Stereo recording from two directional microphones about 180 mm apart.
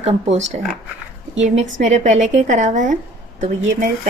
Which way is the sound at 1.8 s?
40° right (ahead or behind).